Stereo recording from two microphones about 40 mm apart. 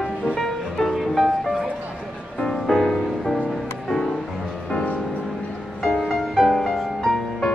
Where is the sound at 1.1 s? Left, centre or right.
Centre.